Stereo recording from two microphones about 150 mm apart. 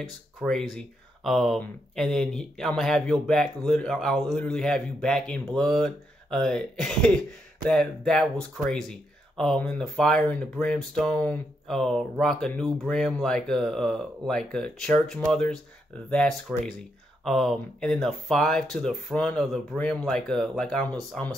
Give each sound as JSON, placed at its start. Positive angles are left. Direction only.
{"t": 0.0, "sound": "speech", "side_deg": 0}